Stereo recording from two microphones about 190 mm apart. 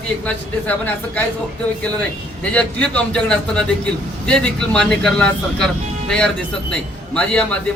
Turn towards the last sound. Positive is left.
turn(degrees=5)  # may be behind; listen again after turning